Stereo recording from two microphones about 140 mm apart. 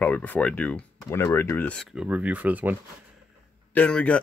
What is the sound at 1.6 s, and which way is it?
Speech, 5° left (ahead or behind).